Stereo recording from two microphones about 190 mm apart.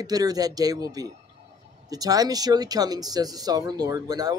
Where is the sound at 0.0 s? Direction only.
20° right (ahead or behind).